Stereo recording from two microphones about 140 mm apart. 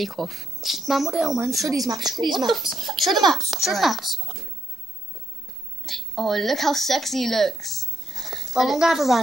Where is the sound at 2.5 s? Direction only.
Centre (ahead or behind).